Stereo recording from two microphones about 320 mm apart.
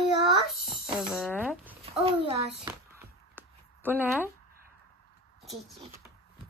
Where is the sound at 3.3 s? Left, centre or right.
Centre.